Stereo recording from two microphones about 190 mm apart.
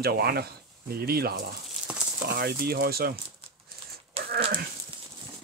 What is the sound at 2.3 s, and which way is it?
Speech, 55° right (ahead or behind).